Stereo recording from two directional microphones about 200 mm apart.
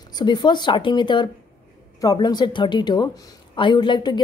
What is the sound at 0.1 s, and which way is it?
A woman's voice, 20° left (ahead or behind).